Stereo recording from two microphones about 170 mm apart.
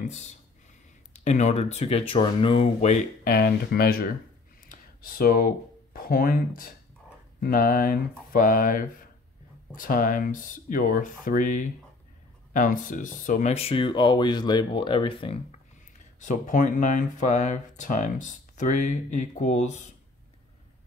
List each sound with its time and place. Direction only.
0.1 s speech: 45° left (ahead or behind)
3.3 s speech: 65° left (ahead or behind)
4.6 s a sound: 55° left (ahead or behind)
5.9 s speech: 60° left (ahead or behind); by 15.3 s 30° left (ahead or behind)
16.2 s speech: 45° left (ahead or behind)